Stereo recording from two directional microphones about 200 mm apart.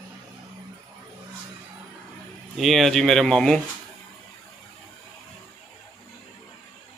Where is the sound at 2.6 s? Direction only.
Centre (ahead or behind).